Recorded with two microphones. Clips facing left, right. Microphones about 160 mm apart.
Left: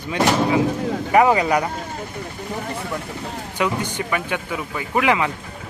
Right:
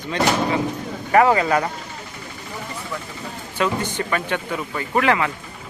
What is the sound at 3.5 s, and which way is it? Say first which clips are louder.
Speech: right 1 dB; 15° left (ahead or behind).